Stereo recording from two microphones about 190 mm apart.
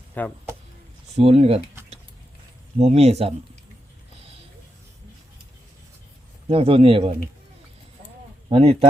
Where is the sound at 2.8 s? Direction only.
35° right (ahead or behind).